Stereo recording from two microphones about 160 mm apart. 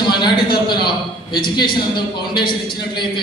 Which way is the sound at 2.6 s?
30° left (ahead or behind).